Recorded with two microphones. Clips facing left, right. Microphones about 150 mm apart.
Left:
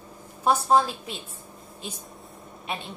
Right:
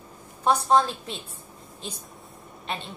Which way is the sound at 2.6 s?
Centre (ahead or behind).